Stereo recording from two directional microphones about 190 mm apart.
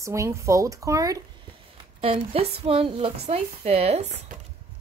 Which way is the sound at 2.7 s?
30° right (ahead or behind).